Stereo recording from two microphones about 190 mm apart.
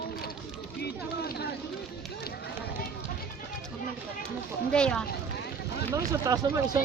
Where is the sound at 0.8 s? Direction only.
60° left (ahead or behind).